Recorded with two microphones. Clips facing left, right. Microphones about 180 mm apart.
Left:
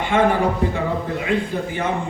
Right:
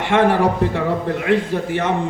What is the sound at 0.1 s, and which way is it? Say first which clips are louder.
A man's voice: right 3 dB; 80° right.